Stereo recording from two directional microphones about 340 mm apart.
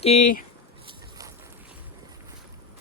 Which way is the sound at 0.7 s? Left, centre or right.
Centre.